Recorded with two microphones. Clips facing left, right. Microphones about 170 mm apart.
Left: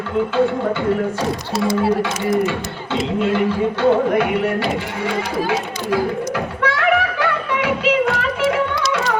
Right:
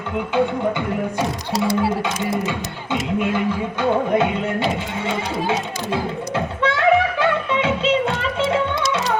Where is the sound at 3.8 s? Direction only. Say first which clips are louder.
Left 2 dB; 20° right (ahead or behind).